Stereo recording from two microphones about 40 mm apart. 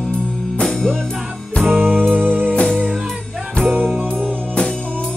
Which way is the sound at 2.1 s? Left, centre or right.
Right.